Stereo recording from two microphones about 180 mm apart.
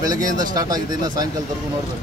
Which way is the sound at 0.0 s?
20° right (ahead or behind).